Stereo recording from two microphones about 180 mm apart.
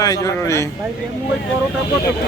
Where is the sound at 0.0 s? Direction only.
20° left (ahead or behind).